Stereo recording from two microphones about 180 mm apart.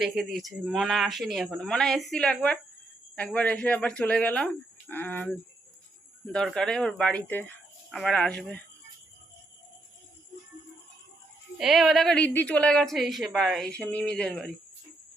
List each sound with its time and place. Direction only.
0.0 s a woman's voice: centre (ahead or behind)
11.5 s a woman's voice: centre (ahead or behind)